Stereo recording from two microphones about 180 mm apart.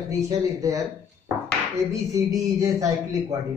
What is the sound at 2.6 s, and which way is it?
Speech, 20° right (ahead or behind).